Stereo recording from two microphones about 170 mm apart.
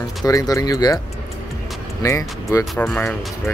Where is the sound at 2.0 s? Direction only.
20° left (ahead or behind).